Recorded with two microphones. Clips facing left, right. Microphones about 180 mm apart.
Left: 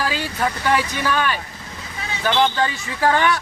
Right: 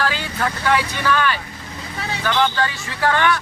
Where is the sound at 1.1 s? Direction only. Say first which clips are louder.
Right 4 dB; 15° left (ahead or behind).